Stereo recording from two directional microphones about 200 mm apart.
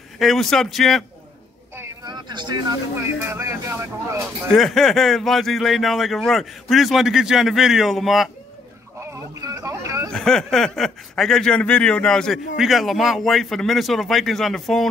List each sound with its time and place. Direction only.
0.2 s speech: centre (ahead or behind)
1.8 s speech: 20° right (ahead or behind)
4.5 s speech: centre (ahead or behind)
9.0 s a sound: 15° right (ahead or behind)
10.1 s speech: 5° left (ahead or behind)